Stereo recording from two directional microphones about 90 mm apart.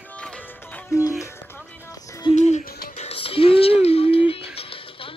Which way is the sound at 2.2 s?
70° left (ahead or behind).